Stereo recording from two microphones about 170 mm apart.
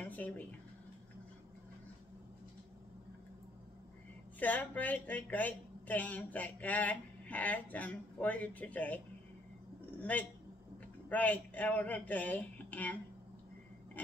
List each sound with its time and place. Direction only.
0.0 s a sound: 10° left (ahead or behind)
4.4 s a woman's voice: 10° left (ahead or behind)
10.1 s a woman's voice: 10° left (ahead or behind)